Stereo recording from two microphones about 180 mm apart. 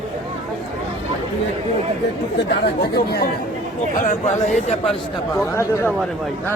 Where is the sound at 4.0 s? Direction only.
45° left (ahead or behind).